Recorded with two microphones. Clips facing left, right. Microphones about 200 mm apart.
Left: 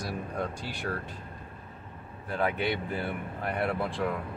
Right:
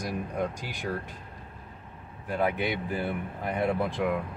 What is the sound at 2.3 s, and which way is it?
Speech, 15° right (ahead or behind).